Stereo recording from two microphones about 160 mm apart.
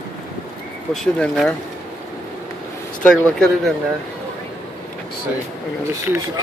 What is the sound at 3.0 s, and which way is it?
Speech, 5° left (ahead or behind).